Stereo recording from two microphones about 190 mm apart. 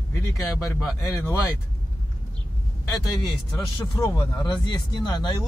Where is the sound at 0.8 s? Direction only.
Centre (ahead or behind).